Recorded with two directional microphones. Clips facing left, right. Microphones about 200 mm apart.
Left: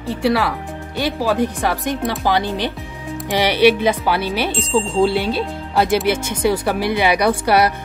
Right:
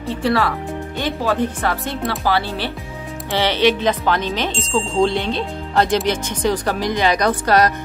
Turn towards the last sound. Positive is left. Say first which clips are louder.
# left 1 dB
turn(degrees=10)  # may be behind; listen again after turning